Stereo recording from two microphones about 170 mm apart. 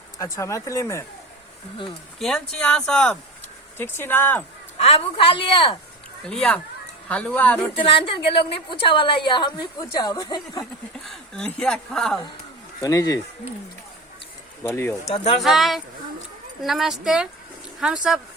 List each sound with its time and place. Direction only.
0.2 s speech: 20° left (ahead or behind)
2.1 s speech: centre (ahead or behind)
4.8 s speech: 35° left (ahead or behind)
6.2 s speech: 5° left (ahead or behind)
7.8 s a woman's voice: 30° left (ahead or behind)
11.0 s speech: 5° left (ahead or behind)
12.8 s a woman's voice: 20° left (ahead or behind)
14.6 s speech: 15° left (ahead or behind)
15.0 s speech: 40° left (ahead or behind)
15.4 s speech: centre (ahead or behind)